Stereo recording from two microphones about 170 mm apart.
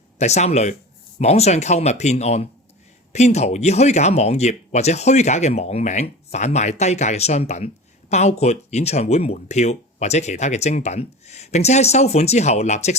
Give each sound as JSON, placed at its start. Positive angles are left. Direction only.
{"t": 0.2, "sound": "speech", "side_deg": 40}